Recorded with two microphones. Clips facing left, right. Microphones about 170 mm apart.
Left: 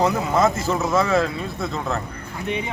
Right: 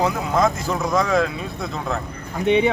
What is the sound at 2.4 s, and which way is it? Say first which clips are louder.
Speech: right 10 dB; 85° right.